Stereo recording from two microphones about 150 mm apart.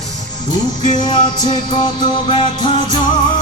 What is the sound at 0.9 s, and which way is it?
Music, 30° left (ahead or behind).